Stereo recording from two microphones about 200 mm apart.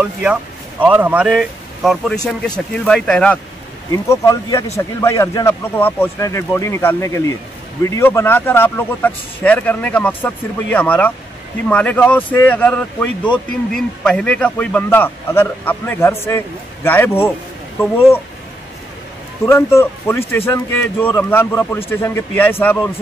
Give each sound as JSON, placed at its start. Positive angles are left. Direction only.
{"t": 0.0, "sound": "speech", "side_deg": -5}
{"t": 3.9, "sound": "a man's voice", "side_deg": 15}
{"t": 19.4, "sound": "a man's voice", "side_deg": 15}